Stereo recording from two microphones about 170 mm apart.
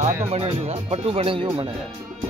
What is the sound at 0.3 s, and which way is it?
Speech, 40° right (ahead or behind).